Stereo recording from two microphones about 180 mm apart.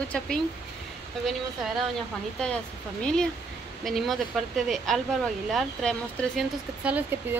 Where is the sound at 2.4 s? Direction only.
5° left (ahead or behind).